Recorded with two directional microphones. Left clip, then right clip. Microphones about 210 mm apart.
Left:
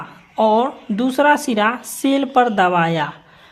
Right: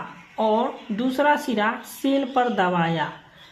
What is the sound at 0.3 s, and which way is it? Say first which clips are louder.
Speech: left 6 dB; 45° left (ahead or behind).